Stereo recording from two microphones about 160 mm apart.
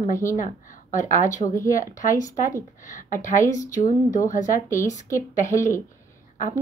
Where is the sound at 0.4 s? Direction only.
55° left (ahead or behind).